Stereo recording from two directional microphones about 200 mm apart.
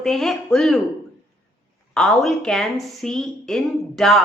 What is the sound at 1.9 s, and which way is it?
A woman's voice, centre (ahead or behind).